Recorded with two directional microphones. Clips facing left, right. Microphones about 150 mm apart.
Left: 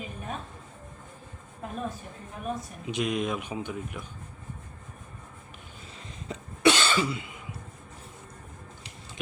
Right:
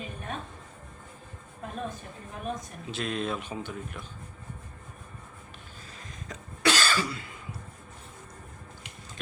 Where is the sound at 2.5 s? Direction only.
15° left (ahead or behind).